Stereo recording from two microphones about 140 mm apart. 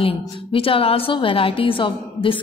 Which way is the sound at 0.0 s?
40° left (ahead or behind).